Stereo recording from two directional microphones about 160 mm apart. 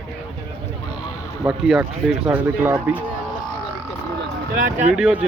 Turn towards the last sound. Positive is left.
turn(degrees=-5)  # may be behind; listen again after turning